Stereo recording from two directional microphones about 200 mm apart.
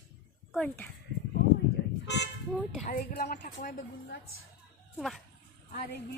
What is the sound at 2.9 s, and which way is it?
Speech, 50° left (ahead or behind).